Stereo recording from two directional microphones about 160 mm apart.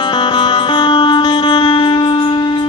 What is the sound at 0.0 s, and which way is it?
Music, 30° left (ahead or behind).